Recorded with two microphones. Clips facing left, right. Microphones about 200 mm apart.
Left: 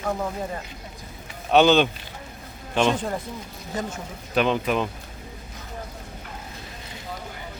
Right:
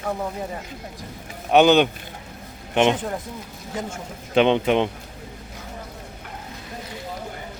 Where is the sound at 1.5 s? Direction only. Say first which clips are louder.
Right 2 dB; 15° right (ahead or behind).